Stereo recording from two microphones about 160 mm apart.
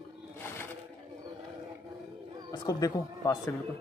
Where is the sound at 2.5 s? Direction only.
25° left (ahead or behind).